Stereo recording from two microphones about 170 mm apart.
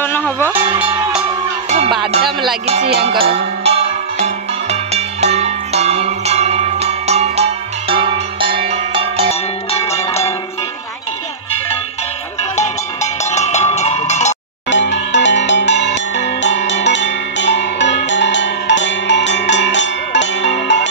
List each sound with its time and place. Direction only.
0.0 s music: 10° left (ahead or behind)
2.9 s music: 70° right (ahead or behind)
3.2 s music: 35° right (ahead or behind)
9.3 s music: 40° left (ahead or behind)
12.5 s cowbell: 40° left (ahead or behind)
14.7 s music: 90° left